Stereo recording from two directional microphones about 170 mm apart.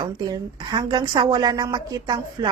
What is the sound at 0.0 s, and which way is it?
A woman's voice, 25° right (ahead or behind).